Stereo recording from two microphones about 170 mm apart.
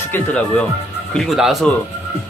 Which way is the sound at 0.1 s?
5° left (ahead or behind).